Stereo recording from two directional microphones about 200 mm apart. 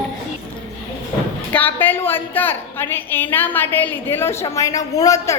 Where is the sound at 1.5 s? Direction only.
10° left (ahead or behind).